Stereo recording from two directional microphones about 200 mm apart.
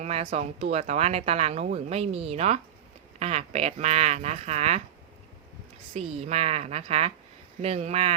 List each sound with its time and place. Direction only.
0.0 s speech: 30° right (ahead or behind)
5.9 s speech: 35° right (ahead or behind)